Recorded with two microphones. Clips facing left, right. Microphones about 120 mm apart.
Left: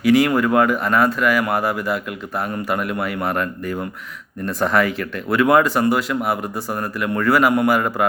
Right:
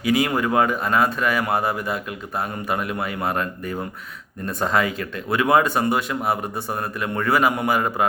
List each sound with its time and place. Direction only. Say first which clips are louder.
0.0 s speech: left 5 dB; 20° right (ahead or behind)